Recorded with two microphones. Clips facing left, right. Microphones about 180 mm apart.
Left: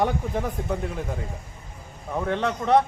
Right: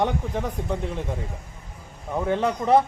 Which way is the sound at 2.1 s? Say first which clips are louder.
Right 2 dB; 5° right (ahead or behind).